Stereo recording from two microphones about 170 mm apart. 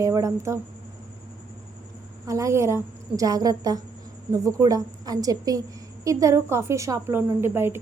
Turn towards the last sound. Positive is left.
turn(degrees=-15)  # may be behind; listen again after turning